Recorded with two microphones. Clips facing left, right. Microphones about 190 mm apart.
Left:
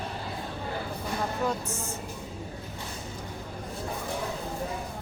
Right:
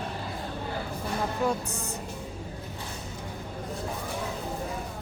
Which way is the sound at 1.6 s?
35° right (ahead or behind).